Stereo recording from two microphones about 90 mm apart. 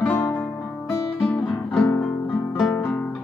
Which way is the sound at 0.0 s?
20° left (ahead or behind).